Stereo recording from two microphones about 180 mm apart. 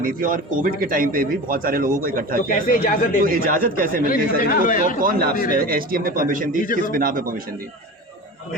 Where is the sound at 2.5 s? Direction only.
55° left (ahead or behind).